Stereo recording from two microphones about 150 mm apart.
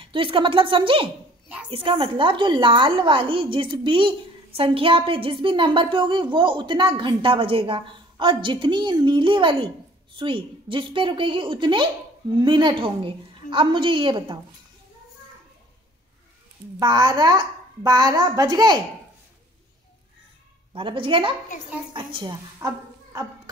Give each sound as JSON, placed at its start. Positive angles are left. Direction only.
{"t": 0.0, "sound": "a woman's voice", "side_deg": -35}
{"t": 16.8, "sound": "a child's voice", "side_deg": -30}
{"t": 20.7, "sound": "a woman's voice", "side_deg": -35}